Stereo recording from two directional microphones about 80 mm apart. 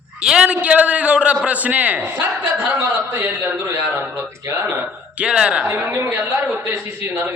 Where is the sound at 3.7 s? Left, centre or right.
Right.